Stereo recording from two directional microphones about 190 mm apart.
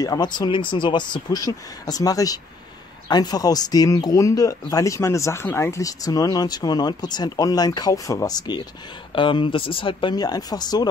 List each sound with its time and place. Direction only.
0.0 s speech: 20° left (ahead or behind)